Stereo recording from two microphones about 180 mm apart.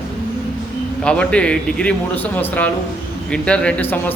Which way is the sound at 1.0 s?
5° left (ahead or behind).